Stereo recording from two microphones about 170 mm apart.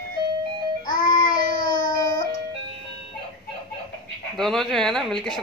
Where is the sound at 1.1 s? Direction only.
25° left (ahead or behind).